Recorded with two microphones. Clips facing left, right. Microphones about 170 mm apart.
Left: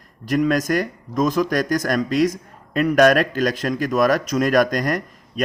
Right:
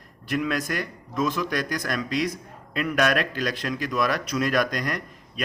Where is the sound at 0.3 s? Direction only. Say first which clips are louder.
Left 8 dB; 40° left (ahead or behind).